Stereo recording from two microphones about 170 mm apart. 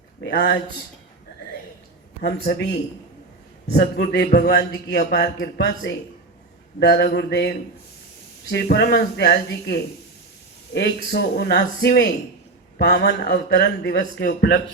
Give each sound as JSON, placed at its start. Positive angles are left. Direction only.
{"t": 0.2, "sound": "a man's voice", "side_deg": 80}
{"t": 2.2, "sound": "a man's voice", "side_deg": 70}
{"t": 6.7, "sound": "mantra", "side_deg": 80}
{"t": 8.4, "sound": "a man's voice", "side_deg": 70}
{"t": 12.8, "sound": "a man's voice", "side_deg": 70}